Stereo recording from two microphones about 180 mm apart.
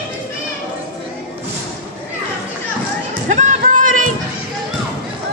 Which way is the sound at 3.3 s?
40° right (ahead or behind).